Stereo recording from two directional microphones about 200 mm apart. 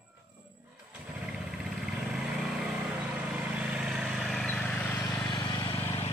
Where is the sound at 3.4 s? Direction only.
5° right (ahead or behind); by 6.0 s 15° left (ahead or behind).